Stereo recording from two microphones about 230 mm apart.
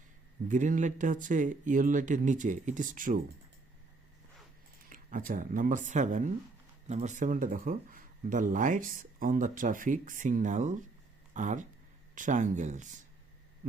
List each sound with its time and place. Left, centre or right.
0.4 s speech: right
4.9 s speech: right